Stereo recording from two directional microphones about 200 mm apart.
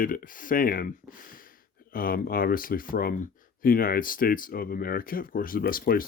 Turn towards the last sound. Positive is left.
turn(degrees=45)  # may be behind; listen again after turning